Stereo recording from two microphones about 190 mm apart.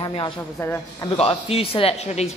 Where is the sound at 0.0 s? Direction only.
25° left (ahead or behind).